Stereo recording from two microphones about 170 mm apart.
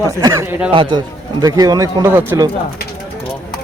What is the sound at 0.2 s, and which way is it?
Speech, 20° right (ahead or behind).